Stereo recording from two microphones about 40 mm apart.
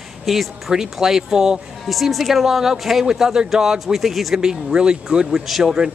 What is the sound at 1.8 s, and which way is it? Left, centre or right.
A woman's voice, centre.